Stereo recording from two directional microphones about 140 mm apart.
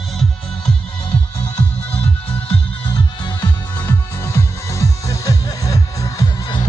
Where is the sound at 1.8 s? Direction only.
10° left (ahead or behind).